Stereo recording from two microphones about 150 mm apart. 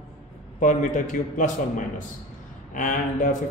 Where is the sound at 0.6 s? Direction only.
60° left (ahead or behind).